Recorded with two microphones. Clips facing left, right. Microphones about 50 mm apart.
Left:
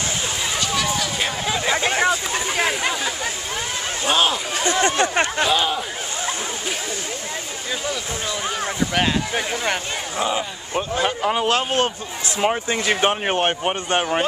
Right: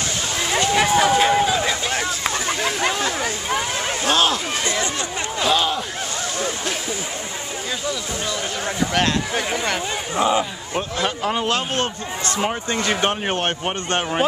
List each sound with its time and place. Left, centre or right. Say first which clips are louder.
0.6 s a sound: right 8 dB; right
1.7 s a sound: left 4 dB; left
2.3 s a sound: left 1 dB; centre
4.0 s speech: even; centre
4.6 s speech: left 9 dB; left
5.4 s speech: right 4 dB; centre
8.9 s speech: right 1 dB; centre
10.1 s speech: right 5 dB; centre
11.0 s a man's voice: left 2 dB; centre